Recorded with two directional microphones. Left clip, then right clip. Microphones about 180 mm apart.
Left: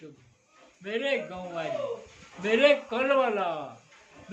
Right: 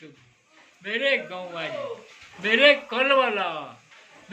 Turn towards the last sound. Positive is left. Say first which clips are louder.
# right 3 dB
turn(degrees=15)  # may be behind; listen again after turning